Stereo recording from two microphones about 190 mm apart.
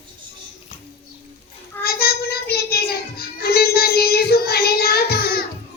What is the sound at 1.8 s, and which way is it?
Music, 55° left (ahead or behind).